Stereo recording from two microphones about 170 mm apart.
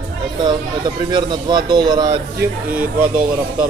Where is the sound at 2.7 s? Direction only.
10° right (ahead or behind).